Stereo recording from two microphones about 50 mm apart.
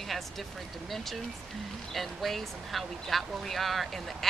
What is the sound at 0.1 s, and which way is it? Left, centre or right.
Speech, centre.